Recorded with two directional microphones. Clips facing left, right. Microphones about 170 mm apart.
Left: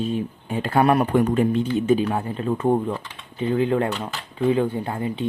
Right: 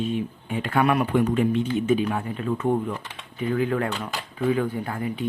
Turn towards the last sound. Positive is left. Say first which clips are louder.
# left 2 dB
turn(degrees=25)  # may be behind; listen again after turning